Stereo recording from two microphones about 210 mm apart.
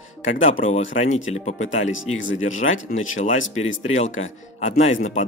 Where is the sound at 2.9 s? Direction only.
35° left (ahead or behind).